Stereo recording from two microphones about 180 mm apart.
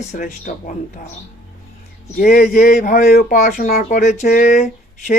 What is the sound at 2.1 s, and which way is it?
Speech, 45° left (ahead or behind).